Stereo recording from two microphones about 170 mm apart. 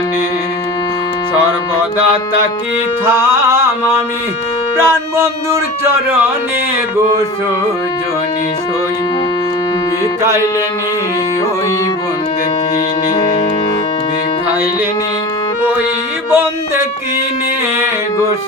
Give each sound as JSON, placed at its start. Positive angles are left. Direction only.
{"t": 3.1, "sound": "speech", "side_deg": -15}
{"t": 4.8, "sound": "speech", "side_deg": -15}
{"t": 16.3, "sound": "music", "side_deg": -15}